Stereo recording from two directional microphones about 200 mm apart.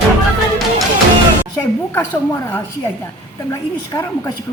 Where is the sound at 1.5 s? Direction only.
15° left (ahead or behind).